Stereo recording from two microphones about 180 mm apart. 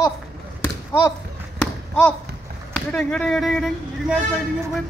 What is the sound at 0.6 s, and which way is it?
Basketball bounce, 15° left (ahead or behind).